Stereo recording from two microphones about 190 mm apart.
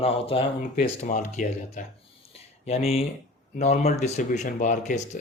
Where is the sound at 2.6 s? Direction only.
30° left (ahead or behind).